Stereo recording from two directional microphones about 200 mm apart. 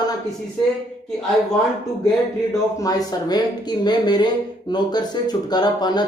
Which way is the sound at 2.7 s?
20° left (ahead or behind).